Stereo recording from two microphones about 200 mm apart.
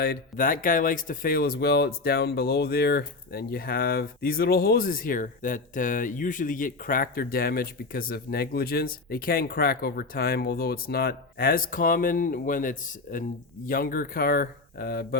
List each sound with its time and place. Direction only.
0.0 s speech: 45° left (ahead or behind)